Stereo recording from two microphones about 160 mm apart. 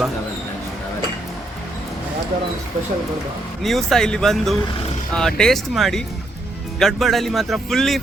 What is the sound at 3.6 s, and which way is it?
A man's voice, centre (ahead or behind).